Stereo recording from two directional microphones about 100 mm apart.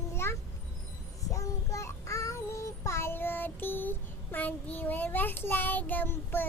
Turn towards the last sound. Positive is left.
turn(degrees=20)  # may be behind; listen again after turning